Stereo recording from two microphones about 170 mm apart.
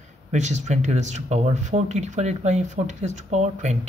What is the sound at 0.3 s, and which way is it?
Speech, 45° right (ahead or behind).